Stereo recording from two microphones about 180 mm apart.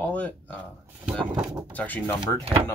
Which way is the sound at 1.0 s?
5° right (ahead or behind).